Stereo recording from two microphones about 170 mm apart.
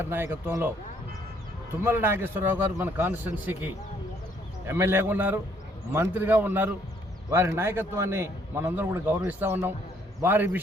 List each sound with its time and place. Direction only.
0.0 s a man's voice: 10° right (ahead or behind)
1.8 s a man's voice: 15° right (ahead or behind)